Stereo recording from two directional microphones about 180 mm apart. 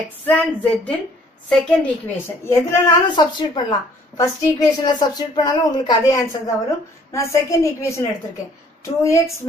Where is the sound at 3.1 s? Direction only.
25° left (ahead or behind).